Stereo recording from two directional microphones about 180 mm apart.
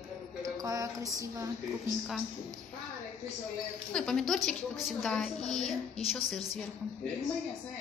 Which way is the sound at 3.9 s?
Centre (ahead or behind).